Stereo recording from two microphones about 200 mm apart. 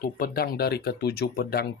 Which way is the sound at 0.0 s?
50° left (ahead or behind).